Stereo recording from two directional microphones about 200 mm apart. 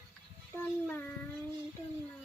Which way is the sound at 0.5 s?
10° left (ahead or behind).